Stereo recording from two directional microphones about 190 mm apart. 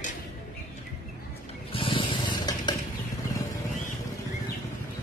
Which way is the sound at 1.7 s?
25° left (ahead or behind).